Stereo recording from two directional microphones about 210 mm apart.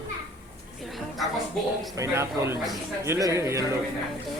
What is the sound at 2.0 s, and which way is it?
A man's voice, 10° right (ahead or behind).